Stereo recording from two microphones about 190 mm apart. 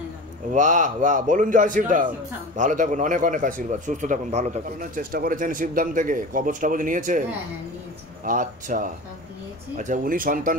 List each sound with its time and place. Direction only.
0.5 s a man's voice: 40° right (ahead or behind)
8.3 s a man's voice: 45° right (ahead or behind)